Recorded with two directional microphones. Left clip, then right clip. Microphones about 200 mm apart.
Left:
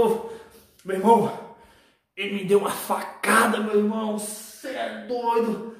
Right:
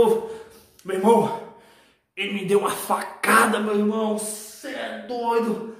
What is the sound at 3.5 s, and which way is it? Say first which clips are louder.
Speech: even; 15° right (ahead or behind).